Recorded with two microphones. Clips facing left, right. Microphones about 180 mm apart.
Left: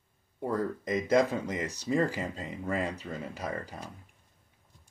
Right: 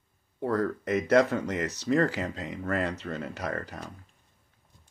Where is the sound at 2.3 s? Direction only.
80° right.